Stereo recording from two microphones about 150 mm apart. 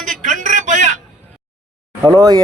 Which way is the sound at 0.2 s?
55° right (ahead or behind).